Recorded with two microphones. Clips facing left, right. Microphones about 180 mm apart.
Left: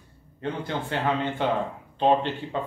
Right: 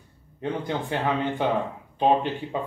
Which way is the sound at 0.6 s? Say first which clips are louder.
Even; 15° right (ahead or behind).